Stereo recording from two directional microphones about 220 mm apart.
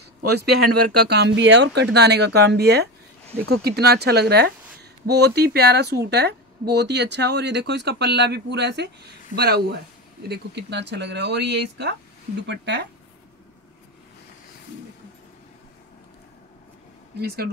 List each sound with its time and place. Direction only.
0.3 s speech: 45° right (ahead or behind)